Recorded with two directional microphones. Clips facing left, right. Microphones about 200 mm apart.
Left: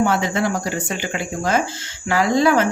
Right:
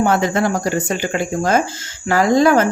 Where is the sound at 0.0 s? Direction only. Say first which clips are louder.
Right 3 dB; 45° right (ahead or behind).